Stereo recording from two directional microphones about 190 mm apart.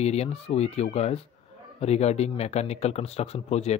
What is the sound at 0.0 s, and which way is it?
Speech, 35° left (ahead or behind).